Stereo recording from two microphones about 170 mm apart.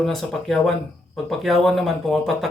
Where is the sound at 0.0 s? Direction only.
Centre (ahead or behind).